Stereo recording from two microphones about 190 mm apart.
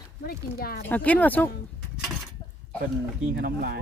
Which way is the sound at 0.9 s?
10° left (ahead or behind).